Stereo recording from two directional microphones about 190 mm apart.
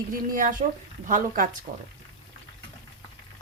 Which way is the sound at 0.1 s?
45° right (ahead or behind).